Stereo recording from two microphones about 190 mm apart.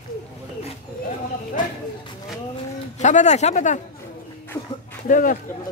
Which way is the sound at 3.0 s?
40° left (ahead or behind).